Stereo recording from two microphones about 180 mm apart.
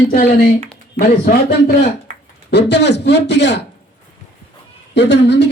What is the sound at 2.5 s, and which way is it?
Speech, 70° left (ahead or behind).